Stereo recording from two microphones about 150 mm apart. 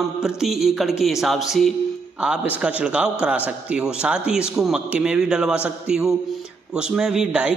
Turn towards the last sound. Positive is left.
turn(degrees=-10)  # may be behind; listen again after turning